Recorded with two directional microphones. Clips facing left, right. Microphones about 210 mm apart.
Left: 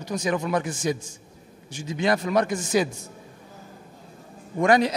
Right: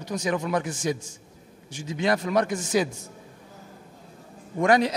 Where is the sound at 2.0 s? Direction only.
15° left (ahead or behind).